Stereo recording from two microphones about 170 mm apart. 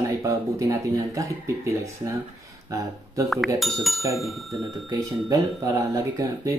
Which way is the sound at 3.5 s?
Centre (ahead or behind).